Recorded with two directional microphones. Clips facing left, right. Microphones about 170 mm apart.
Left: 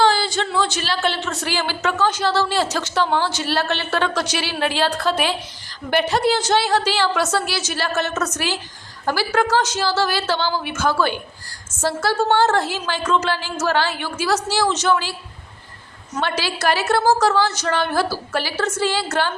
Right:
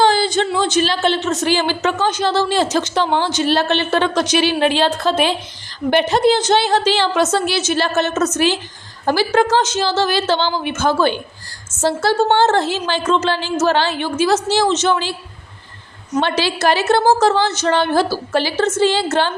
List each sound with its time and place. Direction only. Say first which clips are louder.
0.0 s a woman's voice: right 3 dB; 20° right (ahead or behind)
16.1 s a woman's voice: right 6 dB; 25° right (ahead or behind)